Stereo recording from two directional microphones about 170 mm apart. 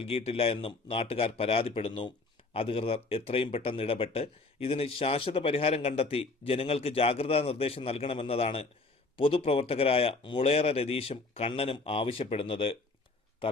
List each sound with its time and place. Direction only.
0.0 s speech: 35° left (ahead or behind)